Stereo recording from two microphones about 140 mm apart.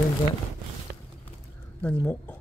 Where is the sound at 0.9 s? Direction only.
90° right.